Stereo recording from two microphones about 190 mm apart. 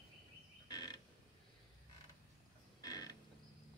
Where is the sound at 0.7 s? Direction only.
20° left (ahead or behind).